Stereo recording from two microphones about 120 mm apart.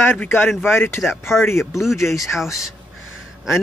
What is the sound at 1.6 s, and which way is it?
Speech, centre (ahead or behind).